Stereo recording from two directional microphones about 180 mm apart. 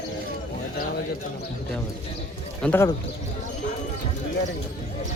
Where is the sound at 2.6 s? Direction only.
10° left (ahead or behind).